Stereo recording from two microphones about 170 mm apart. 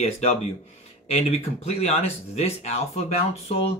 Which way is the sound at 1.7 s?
35° left (ahead or behind).